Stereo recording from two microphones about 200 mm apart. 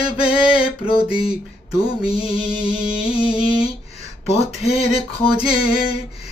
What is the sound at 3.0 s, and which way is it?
Singing, 25° left (ahead or behind).